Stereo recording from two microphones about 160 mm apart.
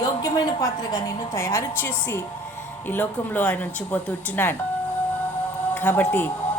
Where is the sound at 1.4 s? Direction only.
15° left (ahead or behind).